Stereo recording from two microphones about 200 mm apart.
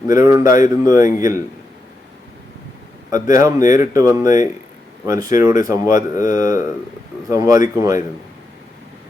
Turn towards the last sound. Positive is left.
turn(degrees=-15)  # may be behind; listen again after turning